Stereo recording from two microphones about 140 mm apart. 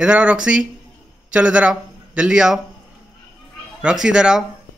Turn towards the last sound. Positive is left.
turn(degrees=-5)  # may be behind; listen again after turning